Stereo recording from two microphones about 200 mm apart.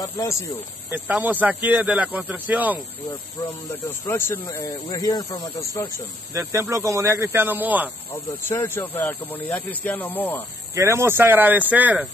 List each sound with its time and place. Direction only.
0.0 s speech: 15° left (ahead or behind)
0.8 s speech: 10° right (ahead or behind)
4.1 s speech: 20° left (ahead or behind)
6.3 s speech: 15° right (ahead or behind)
8.1 s speech: 10° left (ahead or behind)
10.7 s speech: 15° right (ahead or behind)